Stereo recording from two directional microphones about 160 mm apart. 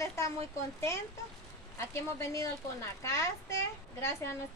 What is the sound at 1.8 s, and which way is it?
A woman's voice, 15° left (ahead or behind).